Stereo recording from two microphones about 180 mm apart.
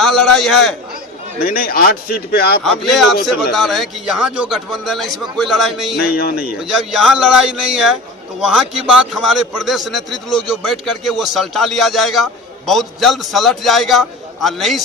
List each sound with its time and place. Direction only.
0.0 s a man's voice: centre (ahead or behind)
1.4 s a man's voice: 55° left (ahead or behind)
2.6 s a man's voice: centre (ahead or behind)
6.1 s a man's voice: 55° left (ahead or behind)
6.6 s a man's voice: centre (ahead or behind)